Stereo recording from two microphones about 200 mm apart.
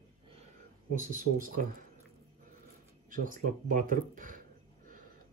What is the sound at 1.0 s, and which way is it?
Speech, 40° right (ahead or behind).